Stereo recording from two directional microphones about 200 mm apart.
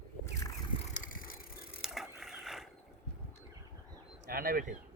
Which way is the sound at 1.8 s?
Centre (ahead or behind).